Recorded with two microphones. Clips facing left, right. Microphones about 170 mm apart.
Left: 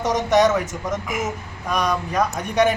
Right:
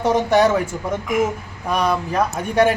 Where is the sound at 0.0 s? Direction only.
30° right (ahead or behind).